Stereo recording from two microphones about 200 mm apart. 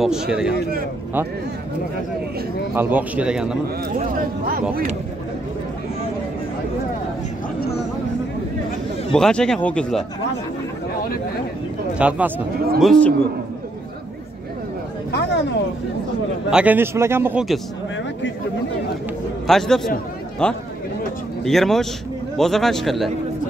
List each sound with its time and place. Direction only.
0.0 s speech: 5° right (ahead or behind)
2.7 s a man's voice: 10° right (ahead or behind)
4.2 s speech: 45° right (ahead or behind)
9.1 s speech: 5° left (ahead or behind)
11.9 s speech: 5° right (ahead or behind)
15.0 s speech: 55° left (ahead or behind)
16.4 s a man's voice: 5° right (ahead or behind)
19.4 s a man's voice: centre (ahead or behind)